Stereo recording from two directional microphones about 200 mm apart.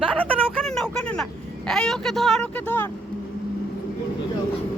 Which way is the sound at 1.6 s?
Centre (ahead or behind).